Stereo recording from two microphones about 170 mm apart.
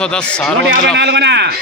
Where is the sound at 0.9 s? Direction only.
90° right.